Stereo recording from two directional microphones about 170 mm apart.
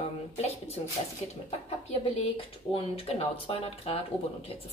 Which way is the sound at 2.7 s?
35° left (ahead or behind).